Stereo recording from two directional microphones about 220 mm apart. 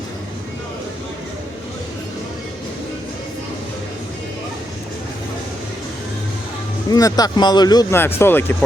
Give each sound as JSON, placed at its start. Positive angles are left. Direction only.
{"t": 6.9, "sound": "speech", "side_deg": 15}